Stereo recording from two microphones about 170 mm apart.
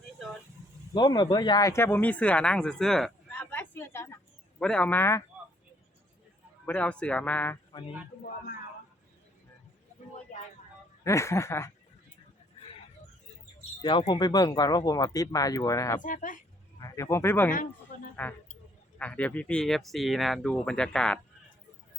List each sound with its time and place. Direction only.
0.9 s speech: 25° left (ahead or behind)
6.7 s speech: 5° left (ahead or behind)
10.3 s a sound: 45° left (ahead or behind)
11.0 s speech: 15° left (ahead or behind)
14.1 s speech: 25° left (ahead or behind)
16.0 s speech: 50° left (ahead or behind)
16.7 s speech: 20° left (ahead or behind)